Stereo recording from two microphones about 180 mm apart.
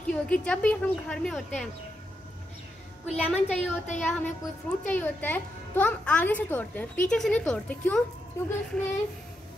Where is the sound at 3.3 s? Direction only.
40° left (ahead or behind).